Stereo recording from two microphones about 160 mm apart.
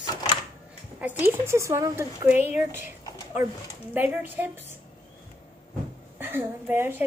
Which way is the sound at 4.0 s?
10° right (ahead or behind).